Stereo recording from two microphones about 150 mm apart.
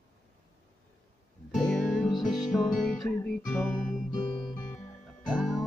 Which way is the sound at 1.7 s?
Centre (ahead or behind).